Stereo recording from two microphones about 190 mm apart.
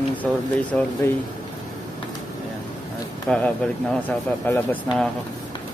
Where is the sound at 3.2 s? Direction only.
5° left (ahead or behind).